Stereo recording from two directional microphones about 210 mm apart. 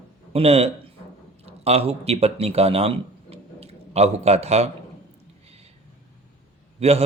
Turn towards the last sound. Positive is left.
turn(degrees=-30)  # may be behind; listen again after turning